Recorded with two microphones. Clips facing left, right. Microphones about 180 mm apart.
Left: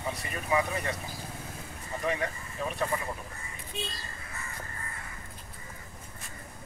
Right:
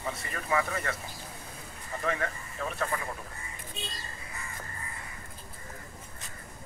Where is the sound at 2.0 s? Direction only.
20° left (ahead or behind).